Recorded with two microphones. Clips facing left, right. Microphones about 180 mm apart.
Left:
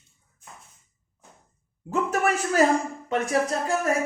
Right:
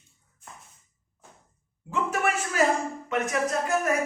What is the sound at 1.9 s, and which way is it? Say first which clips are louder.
A man's voice: left 3 dB; 40° left (ahead or behind).